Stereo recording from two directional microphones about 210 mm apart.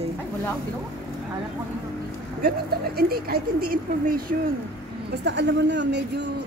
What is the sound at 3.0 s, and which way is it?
Speech, 45° right (ahead or behind).